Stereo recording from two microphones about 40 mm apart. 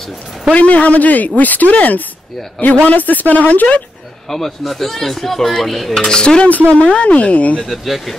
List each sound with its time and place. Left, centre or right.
0.6 s speech: left
4.3 s speech: centre
6.0 s dishes: left
6.7 s speech: left
7.6 s speech: centre